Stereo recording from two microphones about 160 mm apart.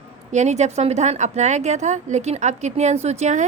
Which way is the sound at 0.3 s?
45° right (ahead or behind).